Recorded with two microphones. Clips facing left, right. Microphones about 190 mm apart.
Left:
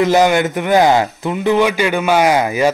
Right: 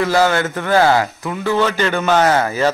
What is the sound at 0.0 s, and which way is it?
A man's voice, 20° left (ahead or behind).